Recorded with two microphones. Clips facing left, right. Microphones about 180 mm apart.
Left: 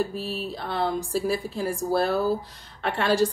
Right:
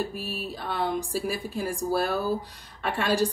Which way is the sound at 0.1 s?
15° right (ahead or behind).